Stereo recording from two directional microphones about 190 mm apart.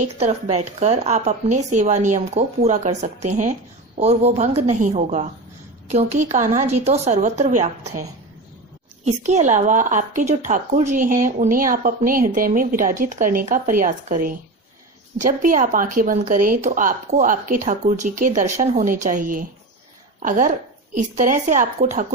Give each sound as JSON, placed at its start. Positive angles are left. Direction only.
{"t": 0.2, "sound": "a woman's voice", "side_deg": -35}